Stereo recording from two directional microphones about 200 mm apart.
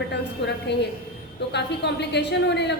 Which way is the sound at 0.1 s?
60° left (ahead or behind).